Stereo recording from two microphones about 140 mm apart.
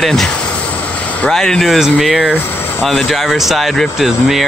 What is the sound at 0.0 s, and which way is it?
Speech, centre (ahead or behind).